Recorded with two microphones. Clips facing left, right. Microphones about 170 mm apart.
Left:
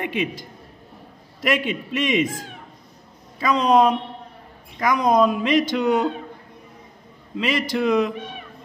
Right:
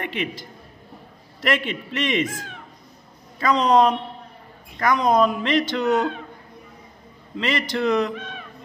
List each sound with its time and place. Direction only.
0.0 s a man's voice: 15° left (ahead or behind)
7.3 s speech: 10° left (ahead or behind)